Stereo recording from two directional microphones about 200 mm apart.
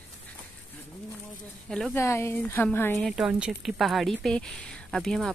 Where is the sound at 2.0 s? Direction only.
15° left (ahead or behind).